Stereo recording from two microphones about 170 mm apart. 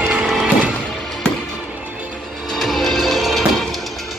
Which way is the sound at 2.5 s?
Centre (ahead or behind).